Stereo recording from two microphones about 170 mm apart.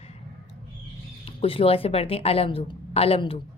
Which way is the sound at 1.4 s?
35° left (ahead or behind).